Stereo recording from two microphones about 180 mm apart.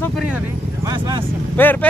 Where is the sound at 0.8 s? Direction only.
25° right (ahead or behind).